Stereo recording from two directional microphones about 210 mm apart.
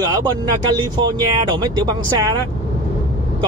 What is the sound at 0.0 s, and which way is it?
Speech, 20° right (ahead or behind).